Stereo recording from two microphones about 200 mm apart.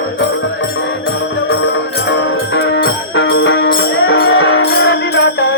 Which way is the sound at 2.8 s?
65° left (ahead or behind).